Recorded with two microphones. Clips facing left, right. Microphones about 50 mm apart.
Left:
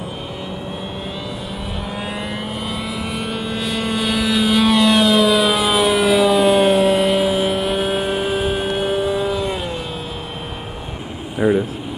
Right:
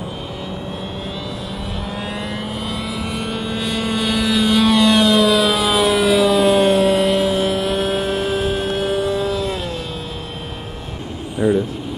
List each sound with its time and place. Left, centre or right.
3.2 s vehicle: centre
11.3 s vehicle: left